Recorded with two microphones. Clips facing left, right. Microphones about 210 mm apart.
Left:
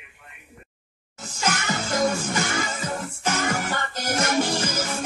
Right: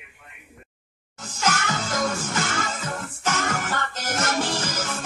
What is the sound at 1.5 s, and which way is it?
Music, 20° left (ahead or behind).